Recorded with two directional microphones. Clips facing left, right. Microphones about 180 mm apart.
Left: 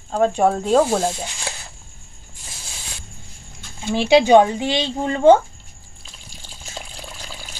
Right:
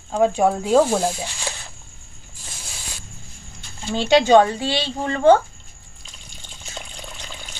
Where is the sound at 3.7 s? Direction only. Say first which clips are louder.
Left 2 dB; 10° left (ahead or behind).